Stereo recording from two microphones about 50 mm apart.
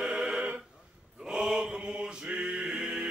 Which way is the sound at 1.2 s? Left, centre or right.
Centre.